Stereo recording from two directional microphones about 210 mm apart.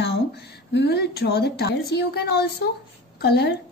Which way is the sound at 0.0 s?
50° left (ahead or behind).